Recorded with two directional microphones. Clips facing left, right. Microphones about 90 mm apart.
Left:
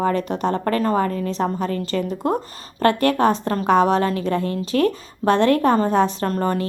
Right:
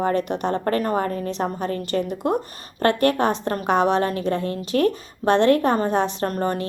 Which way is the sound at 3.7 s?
35° left (ahead or behind).